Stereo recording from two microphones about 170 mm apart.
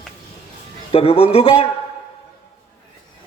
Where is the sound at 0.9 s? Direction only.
35° left (ahead or behind).